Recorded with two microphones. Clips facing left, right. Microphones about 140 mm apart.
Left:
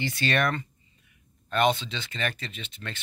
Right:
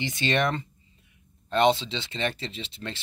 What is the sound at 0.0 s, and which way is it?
Speech, 20° right (ahead or behind).